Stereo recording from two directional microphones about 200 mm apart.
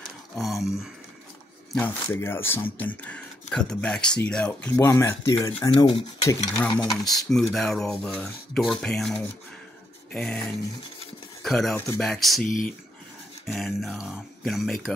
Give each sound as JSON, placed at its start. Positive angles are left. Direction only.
{"t": 0.0, "sound": "a sound", "side_deg": 0}
{"t": 1.8, "sound": "speech", "side_deg": 10}
{"t": 7.2, "sound": "speech", "side_deg": 0}